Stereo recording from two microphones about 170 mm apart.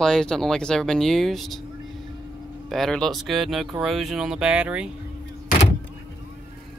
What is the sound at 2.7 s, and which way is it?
Speech, centre (ahead or behind).